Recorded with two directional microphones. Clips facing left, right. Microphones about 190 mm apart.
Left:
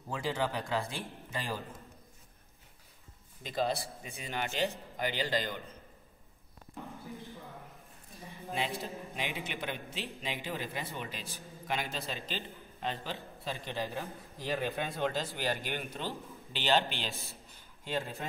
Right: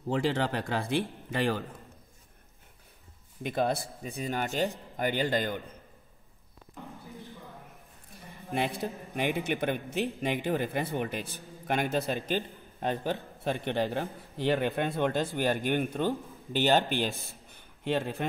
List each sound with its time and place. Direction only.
0.1 s speech: 70° right (ahead or behind)
3.4 s a man's voice: 55° right (ahead or behind)
4.0 s speech: 40° right (ahead or behind)
8.5 s a man's voice: 55° right (ahead or behind)
17.2 s a sound: 55° right (ahead or behind)